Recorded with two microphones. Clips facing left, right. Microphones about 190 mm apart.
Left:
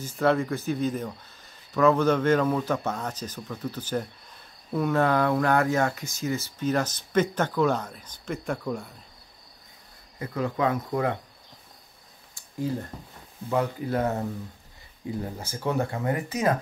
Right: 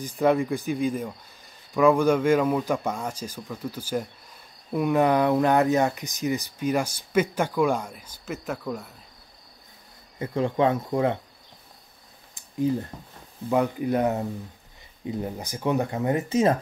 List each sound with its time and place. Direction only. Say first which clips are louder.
0.0 s speech: right 2 dB; 15° right (ahead or behind)
10.1 s speech: right 4 dB; 25° right (ahead or behind)
12.4 s a sound: right 5 dB; 20° right (ahead or behind)
13.5 s speech: right 3 dB; 15° right (ahead or behind)